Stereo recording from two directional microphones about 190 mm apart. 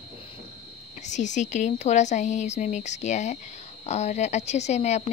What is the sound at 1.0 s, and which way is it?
Speech, 40° left (ahead or behind).